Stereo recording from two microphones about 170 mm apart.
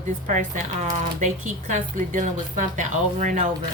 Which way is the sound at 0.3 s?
45° right (ahead or behind).